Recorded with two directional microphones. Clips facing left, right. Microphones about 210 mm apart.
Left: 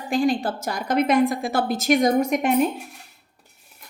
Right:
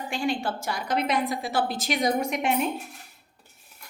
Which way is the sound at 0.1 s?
35° left (ahead or behind).